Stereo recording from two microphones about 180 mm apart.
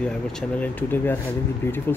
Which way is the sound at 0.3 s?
5° left (ahead or behind).